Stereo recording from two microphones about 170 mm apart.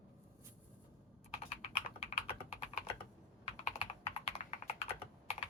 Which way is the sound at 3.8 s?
35° left (ahead or behind).